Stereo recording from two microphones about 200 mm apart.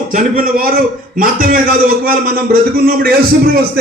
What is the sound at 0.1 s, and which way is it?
A man's voice, 40° right (ahead or behind).